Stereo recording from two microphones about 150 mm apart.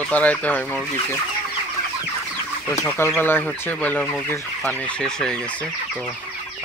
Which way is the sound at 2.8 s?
15° left (ahead or behind).